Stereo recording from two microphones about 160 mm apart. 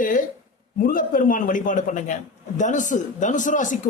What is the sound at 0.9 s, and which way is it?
A man's voice, 60° left (ahead or behind).